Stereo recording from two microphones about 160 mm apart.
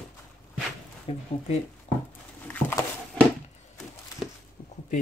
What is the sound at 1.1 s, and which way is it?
Speech, 35° left (ahead or behind).